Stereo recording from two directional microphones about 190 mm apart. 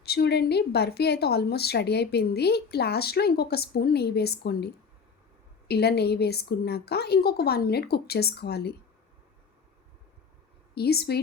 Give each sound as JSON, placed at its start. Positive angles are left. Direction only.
{"t": 0.0, "sound": "a woman's voice", "side_deg": 55}
{"t": 10.8, "sound": "a woman's voice", "side_deg": 55}